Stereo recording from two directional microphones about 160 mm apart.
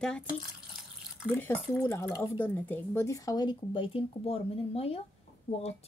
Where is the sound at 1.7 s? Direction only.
15° left (ahead or behind).